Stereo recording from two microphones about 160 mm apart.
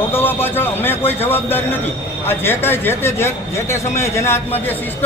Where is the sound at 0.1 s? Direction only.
15° left (ahead or behind).